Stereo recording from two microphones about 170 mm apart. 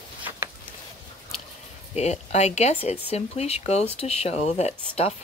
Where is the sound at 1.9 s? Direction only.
40° left (ahead or behind).